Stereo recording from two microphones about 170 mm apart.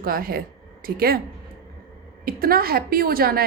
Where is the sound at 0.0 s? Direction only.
60° right (ahead or behind).